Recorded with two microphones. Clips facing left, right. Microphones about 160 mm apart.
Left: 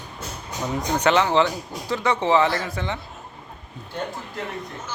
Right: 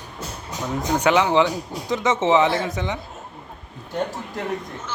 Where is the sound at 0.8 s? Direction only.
10° right (ahead or behind).